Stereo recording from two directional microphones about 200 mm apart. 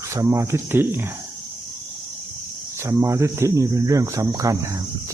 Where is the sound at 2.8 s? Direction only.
15° right (ahead or behind).